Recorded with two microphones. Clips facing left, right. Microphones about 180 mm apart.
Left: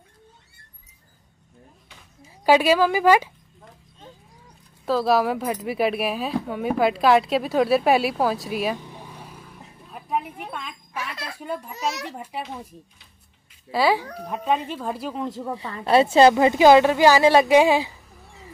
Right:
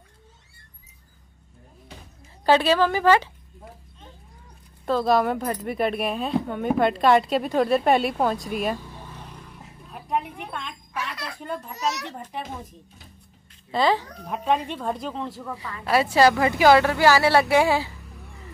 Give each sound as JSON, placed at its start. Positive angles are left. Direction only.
{"t": 2.4, "sound": "speech", "side_deg": 10}
{"t": 4.8, "sound": "speech", "side_deg": 5}
{"t": 8.7, "sound": "vehicle", "side_deg": 15}
{"t": 10.5, "sound": "a child's voice", "side_deg": 5}
{"t": 13.7, "sound": "speech", "side_deg": 10}
{"t": 15.2, "sound": "a woman's voice", "side_deg": 25}